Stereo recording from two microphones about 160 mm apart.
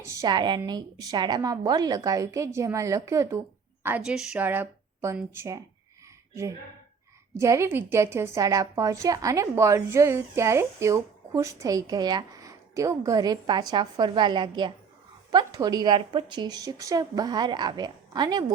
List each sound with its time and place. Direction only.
0.0 s a woman's voice: 20° right (ahead or behind)
3.8 s speech: 10° right (ahead or behind)
7.3 s a woman's voice: 20° right (ahead or behind)